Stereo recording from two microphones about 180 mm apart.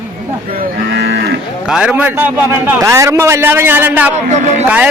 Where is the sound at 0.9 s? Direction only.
70° right (ahead or behind).